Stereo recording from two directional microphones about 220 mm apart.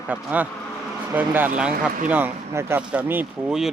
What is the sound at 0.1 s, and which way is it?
Speech, 5° right (ahead or behind).